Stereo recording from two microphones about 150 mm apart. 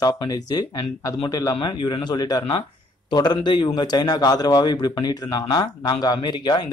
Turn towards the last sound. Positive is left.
turn(degrees=30)  # may be behind; listen again after turning